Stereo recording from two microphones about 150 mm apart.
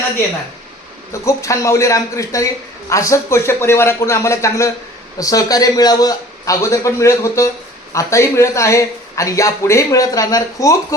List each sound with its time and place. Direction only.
1.2 s a man's voice: 20° left (ahead or behind)